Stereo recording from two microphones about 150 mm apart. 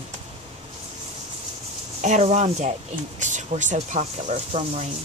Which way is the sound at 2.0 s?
50° right (ahead or behind).